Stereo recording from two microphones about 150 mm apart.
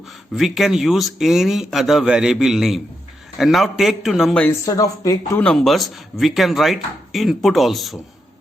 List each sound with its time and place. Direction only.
0.3 s speech: centre (ahead or behind)
4.6 s speech: 25° left (ahead or behind)
5.4 s speech: 5° left (ahead or behind)